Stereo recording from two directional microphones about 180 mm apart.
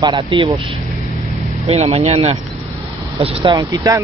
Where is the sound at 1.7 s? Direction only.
35° right (ahead or behind).